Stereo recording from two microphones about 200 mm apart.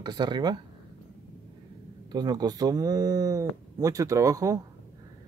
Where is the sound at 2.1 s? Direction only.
20° right (ahead or behind).